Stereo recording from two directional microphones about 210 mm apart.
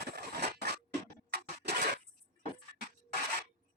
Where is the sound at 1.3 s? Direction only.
50° right (ahead or behind).